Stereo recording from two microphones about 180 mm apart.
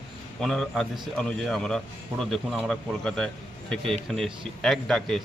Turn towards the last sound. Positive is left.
turn(degrees=5)  # may be behind; listen again after turning